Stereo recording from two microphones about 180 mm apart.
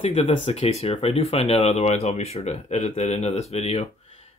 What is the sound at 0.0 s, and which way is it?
Speech, 35° left (ahead or behind).